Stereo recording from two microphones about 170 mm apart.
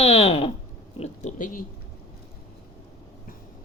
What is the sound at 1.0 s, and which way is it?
Speech, 50° left (ahead or behind).